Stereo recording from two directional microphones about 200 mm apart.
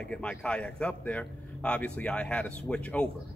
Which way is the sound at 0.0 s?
5° left (ahead or behind).